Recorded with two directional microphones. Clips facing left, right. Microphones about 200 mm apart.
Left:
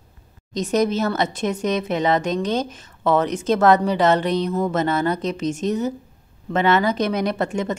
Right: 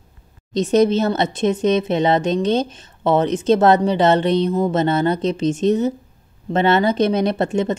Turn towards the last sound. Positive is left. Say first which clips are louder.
# right 4 dB
turn(degrees=-25)  # may be behind; listen again after turning